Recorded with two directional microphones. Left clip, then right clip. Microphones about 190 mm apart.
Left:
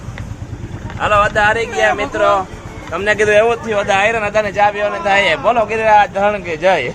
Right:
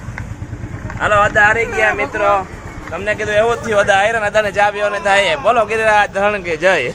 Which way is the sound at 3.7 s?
10° left (ahead or behind).